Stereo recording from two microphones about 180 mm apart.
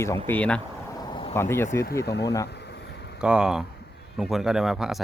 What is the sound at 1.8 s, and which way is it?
Speech, 60° left (ahead or behind).